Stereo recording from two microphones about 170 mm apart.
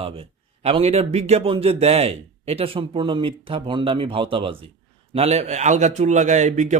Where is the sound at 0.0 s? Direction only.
35° right (ahead or behind).